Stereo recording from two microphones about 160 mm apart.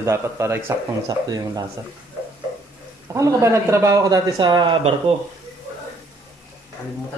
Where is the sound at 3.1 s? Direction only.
20° right (ahead or behind); by 5.1 s 35° right (ahead or behind).